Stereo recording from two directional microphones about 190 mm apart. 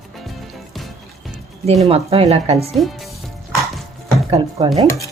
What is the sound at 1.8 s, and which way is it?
Speech, 30° right (ahead or behind).